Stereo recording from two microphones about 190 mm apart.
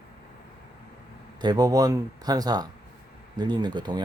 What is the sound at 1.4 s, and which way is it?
Speech, 20° right (ahead or behind).